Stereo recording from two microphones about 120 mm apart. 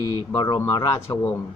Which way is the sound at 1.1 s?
40° left (ahead or behind).